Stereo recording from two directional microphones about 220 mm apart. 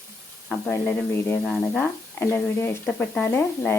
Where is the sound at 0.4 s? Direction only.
5° left (ahead or behind).